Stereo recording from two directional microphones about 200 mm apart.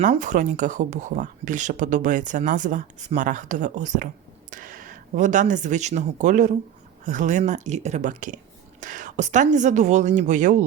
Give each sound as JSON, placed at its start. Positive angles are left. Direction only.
{"t": 0.0, "sound": "speech", "side_deg": -40}